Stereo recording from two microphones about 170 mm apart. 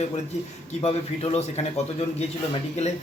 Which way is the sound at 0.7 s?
35° left (ahead or behind).